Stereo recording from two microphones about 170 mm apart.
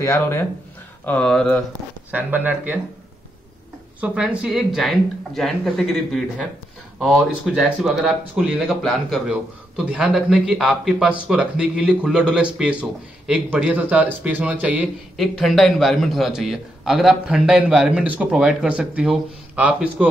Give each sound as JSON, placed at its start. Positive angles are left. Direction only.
{"t": 0.0, "sound": "speech", "side_deg": 15}
{"t": 2.0, "sound": "speech", "side_deg": -10}
{"t": 4.0, "sound": "a man's voice", "side_deg": -5}